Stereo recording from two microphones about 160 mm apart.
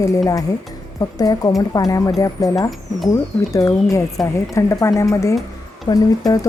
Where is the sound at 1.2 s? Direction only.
25° left (ahead or behind).